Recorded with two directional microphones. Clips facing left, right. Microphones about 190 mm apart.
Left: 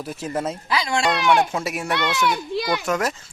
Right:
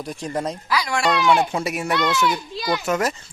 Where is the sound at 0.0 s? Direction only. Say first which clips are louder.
Even; 5° left (ahead or behind).